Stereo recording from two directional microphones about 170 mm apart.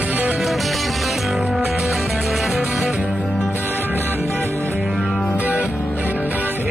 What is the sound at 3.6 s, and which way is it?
Music, 10° right (ahead or behind).